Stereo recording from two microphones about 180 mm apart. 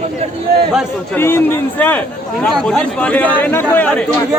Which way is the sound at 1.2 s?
15° left (ahead or behind).